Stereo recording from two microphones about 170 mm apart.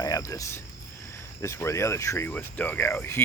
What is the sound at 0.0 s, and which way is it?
Speech, 20° left (ahead or behind).